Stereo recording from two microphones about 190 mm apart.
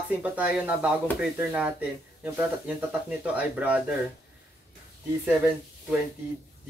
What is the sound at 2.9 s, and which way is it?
Speech, 5° right (ahead or behind).